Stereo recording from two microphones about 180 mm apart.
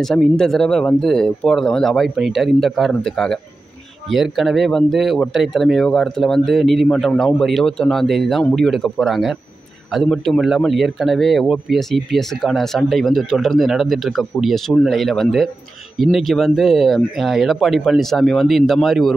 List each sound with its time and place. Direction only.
0.0 s a man's voice: 5° left (ahead or behind)